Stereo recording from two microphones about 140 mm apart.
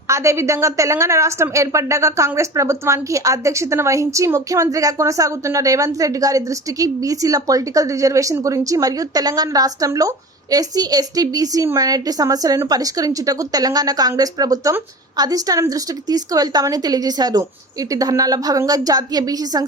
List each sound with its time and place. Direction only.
0.1 s a woman's voice: 20° right (ahead or behind)